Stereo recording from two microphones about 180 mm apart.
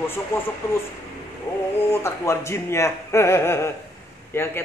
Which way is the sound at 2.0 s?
15° left (ahead or behind).